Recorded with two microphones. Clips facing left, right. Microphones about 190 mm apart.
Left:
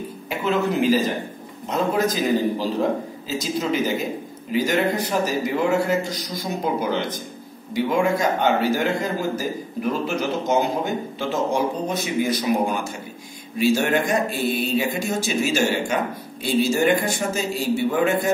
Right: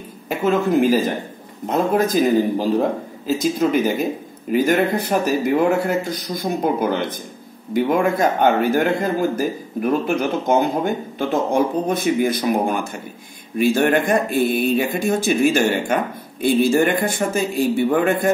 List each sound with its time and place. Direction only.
0.3 s a woman's voice: 50° right (ahead or behind)
3.3 s speech: 55° right (ahead or behind)